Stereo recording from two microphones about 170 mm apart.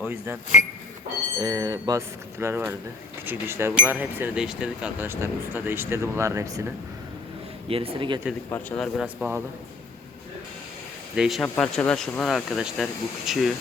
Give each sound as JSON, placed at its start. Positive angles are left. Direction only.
{"t": 0.0, "sound": "speech", "side_deg": -15}
{"t": 1.4, "sound": "speech", "side_deg": -20}
{"t": 7.7, "sound": "speech", "side_deg": -35}
{"t": 8.4, "sound": "speech", "side_deg": 10}
{"t": 8.8, "sound": "speech", "side_deg": 0}
{"t": 11.1, "sound": "speech", "side_deg": 0}
{"t": 11.4, "sound": "speech", "side_deg": 10}